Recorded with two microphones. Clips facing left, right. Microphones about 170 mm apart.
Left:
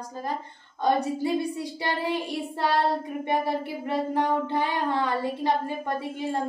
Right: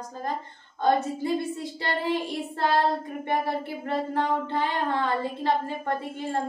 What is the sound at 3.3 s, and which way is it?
Child singing, 15° left (ahead or behind).